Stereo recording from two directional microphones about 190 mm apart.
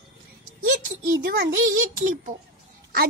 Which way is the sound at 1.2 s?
50° right (ahead or behind).